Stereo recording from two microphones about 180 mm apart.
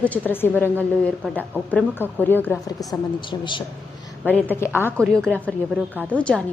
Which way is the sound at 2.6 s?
25° left (ahead or behind).